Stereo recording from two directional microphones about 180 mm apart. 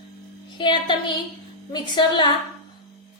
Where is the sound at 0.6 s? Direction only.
25° left (ahead or behind).